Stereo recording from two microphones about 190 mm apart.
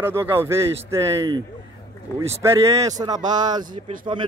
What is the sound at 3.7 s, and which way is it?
Speech, 45° right (ahead or behind).